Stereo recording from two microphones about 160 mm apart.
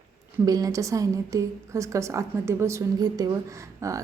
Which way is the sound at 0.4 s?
25° right (ahead or behind).